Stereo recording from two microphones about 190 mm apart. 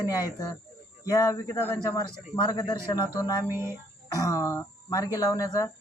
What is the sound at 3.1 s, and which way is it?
Speech, 15° left (ahead or behind).